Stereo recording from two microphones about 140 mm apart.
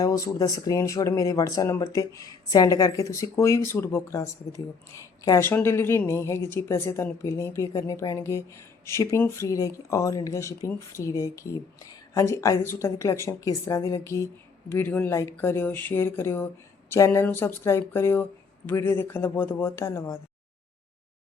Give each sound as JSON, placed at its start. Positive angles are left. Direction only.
{"t": 0.0, "sound": "speech", "side_deg": 25}